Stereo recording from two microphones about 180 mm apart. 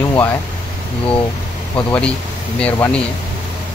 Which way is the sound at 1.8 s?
10° left (ahead or behind).